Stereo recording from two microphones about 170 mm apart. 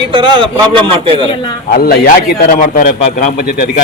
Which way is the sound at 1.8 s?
60° left (ahead or behind).